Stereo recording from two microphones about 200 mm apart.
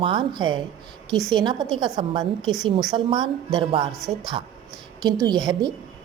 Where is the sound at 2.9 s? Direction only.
25° right (ahead or behind).